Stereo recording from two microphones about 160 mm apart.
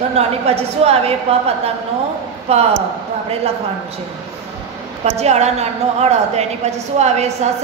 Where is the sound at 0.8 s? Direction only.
40° right (ahead or behind).